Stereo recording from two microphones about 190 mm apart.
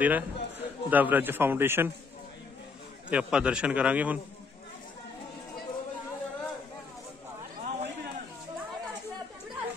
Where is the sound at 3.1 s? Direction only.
5° right (ahead or behind).